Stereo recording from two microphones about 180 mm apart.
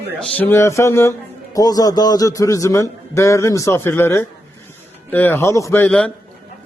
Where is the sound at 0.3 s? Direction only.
10° left (ahead or behind).